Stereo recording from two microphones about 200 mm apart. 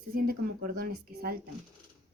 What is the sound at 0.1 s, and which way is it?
A woman's voice, 45° right (ahead or behind).